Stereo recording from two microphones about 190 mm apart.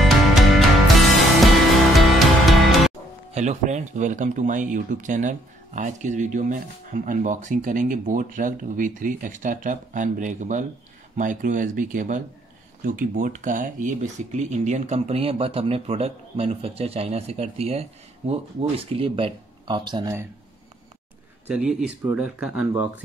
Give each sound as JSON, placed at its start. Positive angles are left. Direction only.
{"t": 0.0, "sound": "music", "side_deg": 0}
{"t": 3.3, "sound": "speech", "side_deg": -35}
{"t": 21.5, "sound": "speech", "side_deg": -5}